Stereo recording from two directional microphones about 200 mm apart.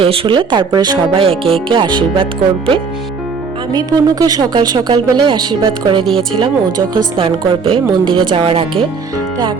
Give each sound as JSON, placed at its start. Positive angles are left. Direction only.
{"t": 0.0, "sound": "speech", "side_deg": -30}
{"t": 3.7, "sound": "speech", "side_deg": -20}